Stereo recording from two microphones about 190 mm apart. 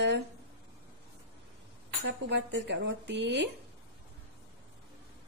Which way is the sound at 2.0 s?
70° right (ahead or behind).